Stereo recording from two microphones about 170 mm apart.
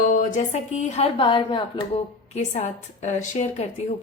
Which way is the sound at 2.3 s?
45° left (ahead or behind).